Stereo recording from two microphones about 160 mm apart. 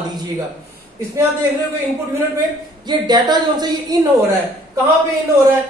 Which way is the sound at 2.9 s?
25° right (ahead or behind).